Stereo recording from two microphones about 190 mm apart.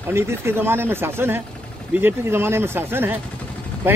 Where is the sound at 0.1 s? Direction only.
15° right (ahead or behind).